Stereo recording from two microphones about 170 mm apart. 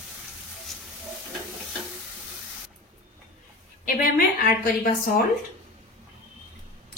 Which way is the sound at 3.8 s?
55° left (ahead or behind).